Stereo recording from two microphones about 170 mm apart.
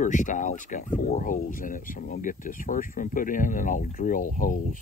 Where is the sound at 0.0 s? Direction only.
45° left (ahead or behind).